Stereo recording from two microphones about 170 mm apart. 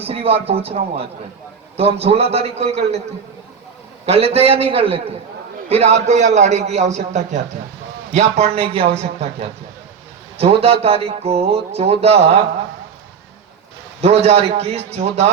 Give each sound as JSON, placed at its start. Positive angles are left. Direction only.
{"t": 0.0, "sound": "speech", "side_deg": -35}
{"t": 4.0, "sound": "a man's voice", "side_deg": -35}
{"t": 14.0, "sound": "speech", "side_deg": -40}